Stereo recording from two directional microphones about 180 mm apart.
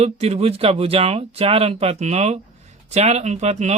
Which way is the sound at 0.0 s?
35° right (ahead or behind).